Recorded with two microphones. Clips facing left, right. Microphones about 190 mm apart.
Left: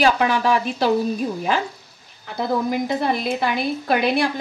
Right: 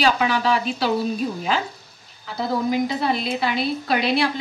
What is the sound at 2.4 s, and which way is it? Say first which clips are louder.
A woman's voice: even; 50° left (ahead or behind).